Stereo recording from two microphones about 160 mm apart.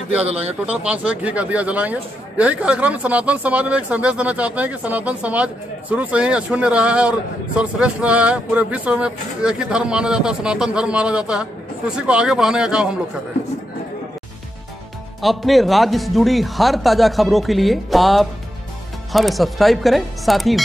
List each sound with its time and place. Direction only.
0.2 s speech: 40° right (ahead or behind)
0.7 s speech: 10° right (ahead or behind)
15.2 s speech: centre (ahead or behind)